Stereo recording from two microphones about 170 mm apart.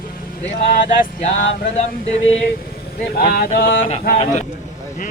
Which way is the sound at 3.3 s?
60° left (ahead or behind).